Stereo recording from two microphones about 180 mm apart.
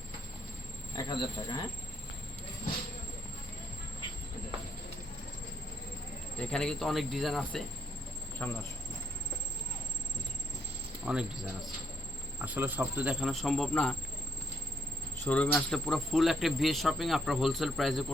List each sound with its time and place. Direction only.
0.9 s speech: 20° left (ahead or behind)
6.5 s speech: 5° left (ahead or behind)
11.0 s speech: 5° right (ahead or behind)
12.4 s speech: 10° right (ahead or behind)
15.2 s speech: 10° left (ahead or behind)